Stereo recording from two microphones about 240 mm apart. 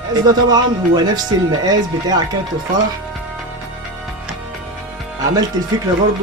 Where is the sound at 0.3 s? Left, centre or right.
Centre.